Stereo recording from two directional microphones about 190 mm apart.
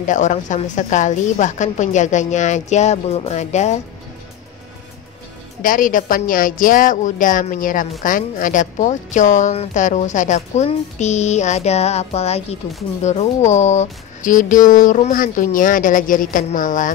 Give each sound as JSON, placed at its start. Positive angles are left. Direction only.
{"t": 0.0, "sound": "speech", "side_deg": 40}
{"t": 5.6, "sound": "speech", "side_deg": 45}